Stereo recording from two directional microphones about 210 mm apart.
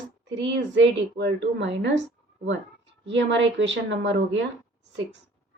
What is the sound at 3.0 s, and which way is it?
A woman's voice, 60° right (ahead or behind).